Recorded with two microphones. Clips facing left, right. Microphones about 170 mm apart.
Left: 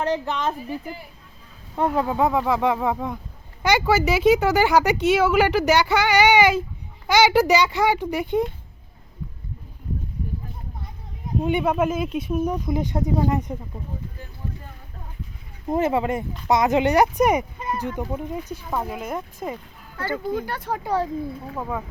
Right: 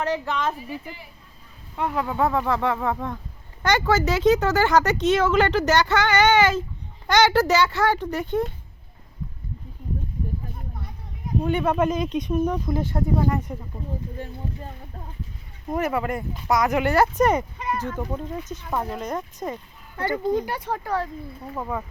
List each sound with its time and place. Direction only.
0.1 s speech: 20° left (ahead or behind)
1.7 s speech: 40° left (ahead or behind)
2.0 s speech: 15° left (ahead or behind)
11.4 s speech: 10° left (ahead or behind)
15.7 s speech: 25° left (ahead or behind); by 19.5 s 5° left (ahead or behind)
20.0 s speech: 20° right (ahead or behind)
20.7 s speech: 10° left (ahead or behind)
21.5 s speech: 5° left (ahead or behind)